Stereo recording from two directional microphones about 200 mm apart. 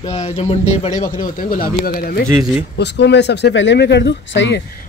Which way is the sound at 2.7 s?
60° left (ahead or behind).